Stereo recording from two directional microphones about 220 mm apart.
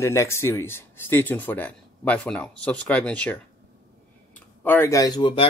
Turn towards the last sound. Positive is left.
turn(degrees=20)  # may be behind; listen again after turning